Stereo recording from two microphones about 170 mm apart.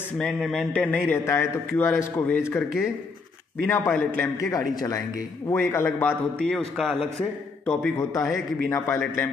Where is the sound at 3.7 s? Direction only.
10° left (ahead or behind).